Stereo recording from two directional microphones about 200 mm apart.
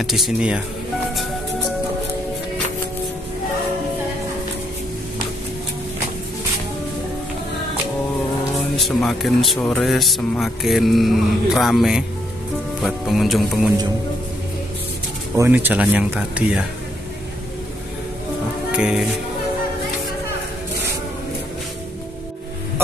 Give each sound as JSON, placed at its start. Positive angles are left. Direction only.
{"t": 0.0, "sound": "speech", "side_deg": 0}
{"t": 8.7, "sound": "speech", "side_deg": 0}
{"t": 15.3, "sound": "speech", "side_deg": -10}
{"t": 18.7, "sound": "music", "side_deg": -5}